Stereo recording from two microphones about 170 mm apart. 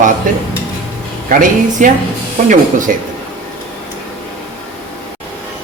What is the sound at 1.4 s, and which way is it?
Speech, 50° right (ahead or behind).